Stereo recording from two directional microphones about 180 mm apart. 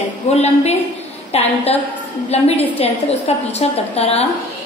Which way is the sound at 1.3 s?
35° left (ahead or behind).